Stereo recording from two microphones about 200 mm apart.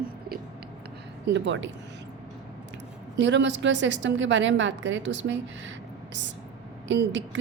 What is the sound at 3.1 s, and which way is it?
A woman's voice, 65° right (ahead or behind).